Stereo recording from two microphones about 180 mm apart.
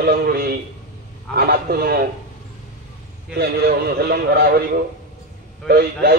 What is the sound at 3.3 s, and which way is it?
A man's voice, 60° right (ahead or behind).